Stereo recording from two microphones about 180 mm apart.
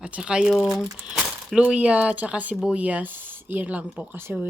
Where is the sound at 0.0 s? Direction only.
5° right (ahead or behind).